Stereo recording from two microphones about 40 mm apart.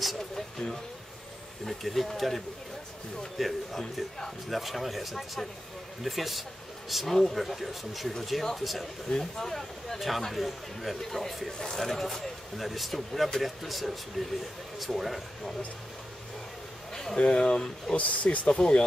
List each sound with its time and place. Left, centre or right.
1.7 s speech: centre
9.1 s speech: centre
16.9 s a sound: centre
17.2 s speech: left
17.9 s speech: left
18.5 s speech: left